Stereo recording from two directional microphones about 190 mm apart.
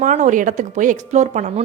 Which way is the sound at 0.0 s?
40° right (ahead or behind).